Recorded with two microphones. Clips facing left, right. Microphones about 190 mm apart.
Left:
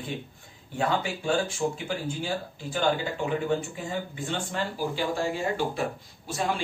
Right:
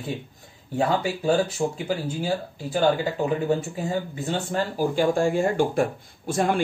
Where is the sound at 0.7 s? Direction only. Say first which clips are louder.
Right 4 dB; 40° right (ahead or behind).